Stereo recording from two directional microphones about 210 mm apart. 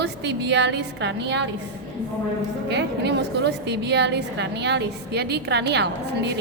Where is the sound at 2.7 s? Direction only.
55° right (ahead or behind).